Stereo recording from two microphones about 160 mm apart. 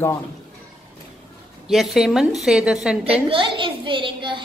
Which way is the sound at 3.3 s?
30° right (ahead or behind).